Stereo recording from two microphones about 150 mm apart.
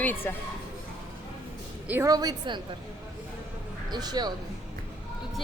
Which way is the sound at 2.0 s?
25° right (ahead or behind).